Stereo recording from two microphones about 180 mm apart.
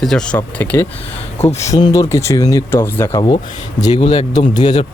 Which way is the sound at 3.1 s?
25° left (ahead or behind).